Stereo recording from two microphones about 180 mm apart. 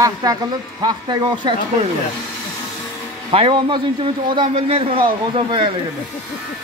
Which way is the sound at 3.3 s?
30° right (ahead or behind).